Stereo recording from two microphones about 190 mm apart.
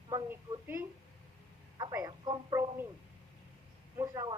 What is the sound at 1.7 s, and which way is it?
Telephone, 20° right (ahead or behind).